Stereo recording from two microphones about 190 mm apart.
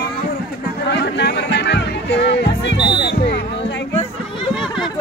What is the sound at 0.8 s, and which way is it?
Chatter, 65° left (ahead or behind).